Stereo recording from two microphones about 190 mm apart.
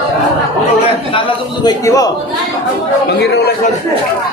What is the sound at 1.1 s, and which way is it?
Speech, 20° left (ahead or behind).